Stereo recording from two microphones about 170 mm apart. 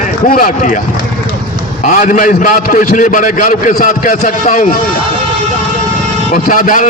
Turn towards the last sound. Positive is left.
turn(degrees=50)  # may be behind; listen again after turning